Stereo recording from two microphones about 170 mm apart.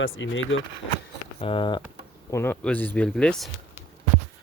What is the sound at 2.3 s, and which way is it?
Speech, 10° left (ahead or behind).